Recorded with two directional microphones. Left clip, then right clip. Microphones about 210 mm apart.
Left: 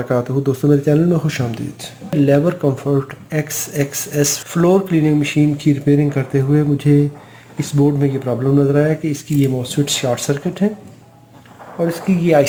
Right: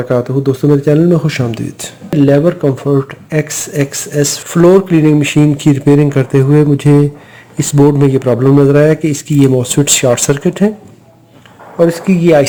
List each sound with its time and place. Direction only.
0.1 s speech: 20° right (ahead or behind); by 10.7 s 35° right (ahead or behind)
11.8 s speech: 30° right (ahead or behind)